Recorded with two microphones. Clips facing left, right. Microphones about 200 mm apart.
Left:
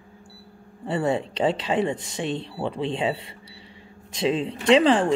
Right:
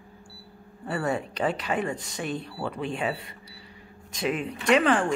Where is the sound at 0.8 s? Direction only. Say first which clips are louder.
Left 4 dB; 25° left (ahead or behind).